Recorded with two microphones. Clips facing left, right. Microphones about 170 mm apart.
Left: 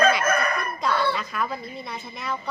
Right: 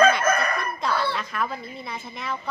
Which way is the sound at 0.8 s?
Centre (ahead or behind).